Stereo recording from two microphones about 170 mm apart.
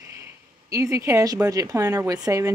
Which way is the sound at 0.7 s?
20° right (ahead or behind).